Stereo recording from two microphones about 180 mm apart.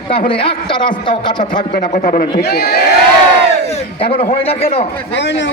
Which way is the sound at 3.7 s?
35° left (ahead or behind).